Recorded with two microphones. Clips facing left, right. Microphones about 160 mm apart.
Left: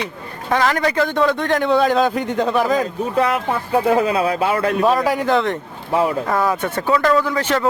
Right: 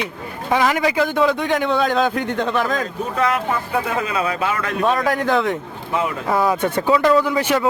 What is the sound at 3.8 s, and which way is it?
Speech, 35° left (ahead or behind).